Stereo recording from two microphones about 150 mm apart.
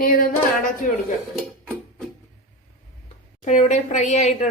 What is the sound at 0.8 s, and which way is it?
Speech, 60° left (ahead or behind).